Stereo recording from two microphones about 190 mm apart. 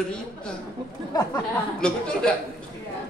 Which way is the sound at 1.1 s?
20° left (ahead or behind).